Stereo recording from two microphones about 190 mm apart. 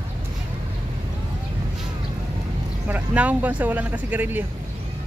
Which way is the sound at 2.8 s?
10° right (ahead or behind).